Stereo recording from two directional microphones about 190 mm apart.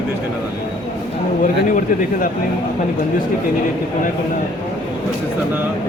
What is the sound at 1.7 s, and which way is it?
Speech, 45° left (ahead or behind).